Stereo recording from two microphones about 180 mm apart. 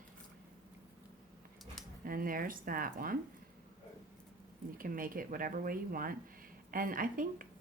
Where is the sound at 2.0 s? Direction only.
50° right (ahead or behind).